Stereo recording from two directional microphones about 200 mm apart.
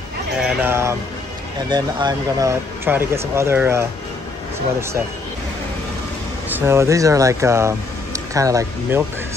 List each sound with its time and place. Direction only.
0.4 s speech: 5° right (ahead or behind)
6.5 s speech: 10° right (ahead or behind)